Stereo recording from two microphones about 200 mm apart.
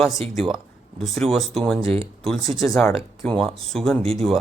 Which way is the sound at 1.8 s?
30° right (ahead or behind).